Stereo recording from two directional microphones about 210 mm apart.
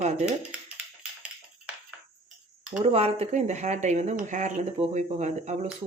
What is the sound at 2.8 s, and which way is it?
Speech, 30° right (ahead or behind).